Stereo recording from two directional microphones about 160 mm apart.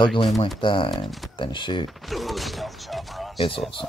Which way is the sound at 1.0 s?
Centre (ahead or behind).